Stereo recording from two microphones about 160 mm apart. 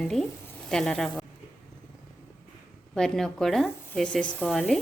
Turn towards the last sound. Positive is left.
turn(degrees=0)  # may be behind; listen again after turning